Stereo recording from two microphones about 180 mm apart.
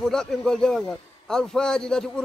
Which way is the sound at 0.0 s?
5° left (ahead or behind).